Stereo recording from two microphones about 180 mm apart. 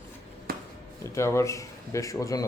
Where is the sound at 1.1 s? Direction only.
15° left (ahead or behind).